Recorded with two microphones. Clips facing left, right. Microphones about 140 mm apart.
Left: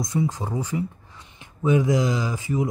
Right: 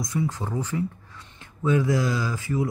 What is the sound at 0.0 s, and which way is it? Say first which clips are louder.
Speech: left 2 dB; 20° left (ahead or behind).